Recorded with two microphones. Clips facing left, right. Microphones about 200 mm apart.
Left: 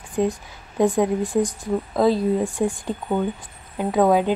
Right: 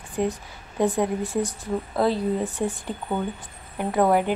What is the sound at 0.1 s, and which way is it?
A woman's voice, 15° left (ahead or behind).